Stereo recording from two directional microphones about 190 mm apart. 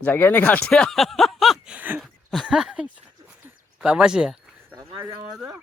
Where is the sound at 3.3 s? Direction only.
5° right (ahead or behind).